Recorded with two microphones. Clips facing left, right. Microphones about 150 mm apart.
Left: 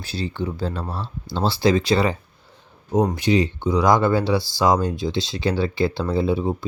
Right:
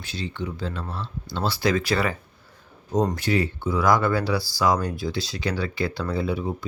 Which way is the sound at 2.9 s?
10° left (ahead or behind).